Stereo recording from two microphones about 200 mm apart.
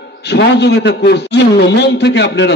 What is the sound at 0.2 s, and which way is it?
A man's voice, 55° left (ahead or behind).